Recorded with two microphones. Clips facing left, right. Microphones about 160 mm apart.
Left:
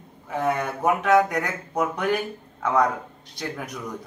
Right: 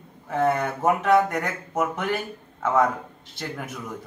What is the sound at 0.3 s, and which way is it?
A man's voice, centre (ahead or behind).